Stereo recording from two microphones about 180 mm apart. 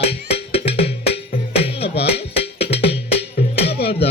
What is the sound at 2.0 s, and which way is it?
Music, 65° left (ahead or behind).